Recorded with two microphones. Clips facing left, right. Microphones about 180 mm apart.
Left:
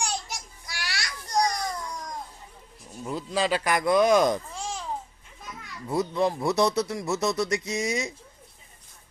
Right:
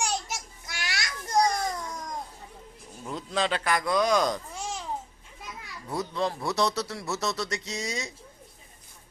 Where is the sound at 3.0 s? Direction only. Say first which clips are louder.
Left 2 dB; 5° left (ahead or behind); by 4.4 s 20° left (ahead or behind).